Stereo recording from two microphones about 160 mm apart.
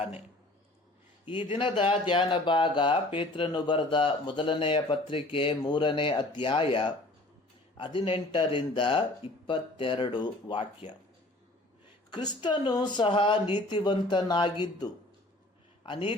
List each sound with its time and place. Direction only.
1.5 s speech: 30° left (ahead or behind)
12.1 s a man's voice: 30° left (ahead or behind)